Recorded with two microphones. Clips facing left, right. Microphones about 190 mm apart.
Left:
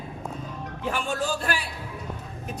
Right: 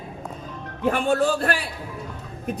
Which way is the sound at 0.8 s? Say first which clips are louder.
Right 8 dB; 55° right (ahead or behind).